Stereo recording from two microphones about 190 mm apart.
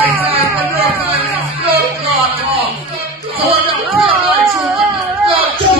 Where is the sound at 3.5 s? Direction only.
30° right (ahead or behind).